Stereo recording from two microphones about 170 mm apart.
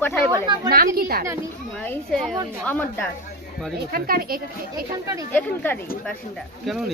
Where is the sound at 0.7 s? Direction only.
60° right (ahead or behind).